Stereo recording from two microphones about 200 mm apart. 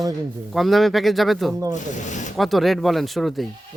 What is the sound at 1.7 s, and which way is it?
Speech, 40° left (ahead or behind).